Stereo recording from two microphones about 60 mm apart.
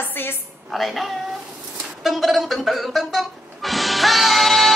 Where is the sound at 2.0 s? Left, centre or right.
Centre.